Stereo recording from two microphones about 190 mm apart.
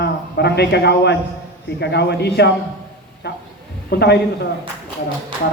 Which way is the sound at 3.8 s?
60° left (ahead or behind).